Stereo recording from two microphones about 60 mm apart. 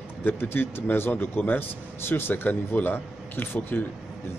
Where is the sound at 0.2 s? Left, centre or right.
Left.